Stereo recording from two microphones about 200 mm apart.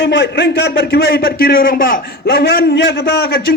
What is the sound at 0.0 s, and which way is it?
A man's voice, 60° left (ahead or behind).